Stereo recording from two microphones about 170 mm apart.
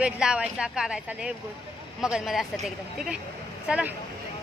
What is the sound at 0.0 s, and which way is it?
Speech, 5° right (ahead or behind).